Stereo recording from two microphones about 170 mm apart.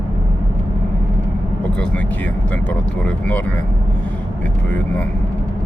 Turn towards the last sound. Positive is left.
turn(degrees=10)  # may be behind; listen again after turning